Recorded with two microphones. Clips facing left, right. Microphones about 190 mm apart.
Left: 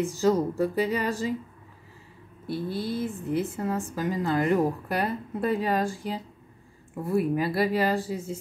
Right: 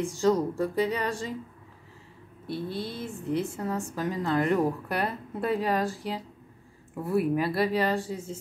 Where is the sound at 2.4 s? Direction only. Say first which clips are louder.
Left 2 dB; 5° left (ahead or behind).